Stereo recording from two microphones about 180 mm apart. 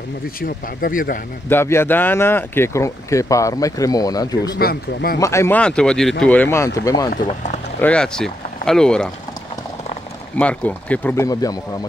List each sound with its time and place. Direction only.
0.4 s speech: 55° left (ahead or behind)
1.5 s speech: 15° left (ahead or behind)
4.6 s speech: 55° left (ahead or behind)
5.2 s speech: 15° left (ahead or behind)
7.2 s speech: 40° left (ahead or behind)
7.8 s speech: 5° left (ahead or behind)
10.3 s speech: 10° left (ahead or behind)